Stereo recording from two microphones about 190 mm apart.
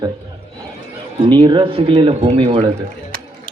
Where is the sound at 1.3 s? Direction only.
25° right (ahead or behind).